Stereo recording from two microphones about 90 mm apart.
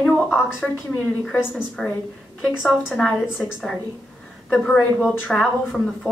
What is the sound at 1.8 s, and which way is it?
Speech, 5° left (ahead or behind).